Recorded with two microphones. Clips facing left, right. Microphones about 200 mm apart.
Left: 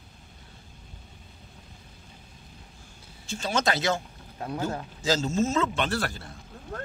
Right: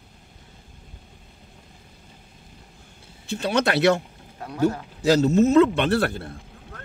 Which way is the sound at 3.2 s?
60° right (ahead or behind).